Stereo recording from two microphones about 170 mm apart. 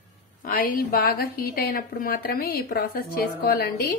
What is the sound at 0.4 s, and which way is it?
A woman's voice, 55° left (ahead or behind).